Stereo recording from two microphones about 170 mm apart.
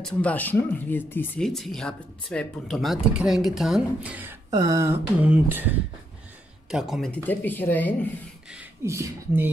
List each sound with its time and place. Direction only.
0.0 s speech: 10° left (ahead or behind)
7.2 s speech: 10° left (ahead or behind)
8.5 s speech: 10° right (ahead or behind)